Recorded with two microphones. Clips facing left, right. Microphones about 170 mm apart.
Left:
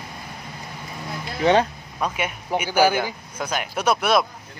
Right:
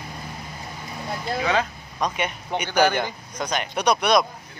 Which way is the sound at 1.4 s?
30° left (ahead or behind).